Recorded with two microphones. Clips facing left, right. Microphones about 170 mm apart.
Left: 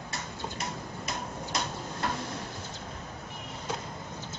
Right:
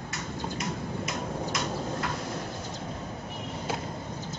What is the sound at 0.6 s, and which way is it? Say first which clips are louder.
Tick-tock: right 5 dB; 30° left (ahead or behind).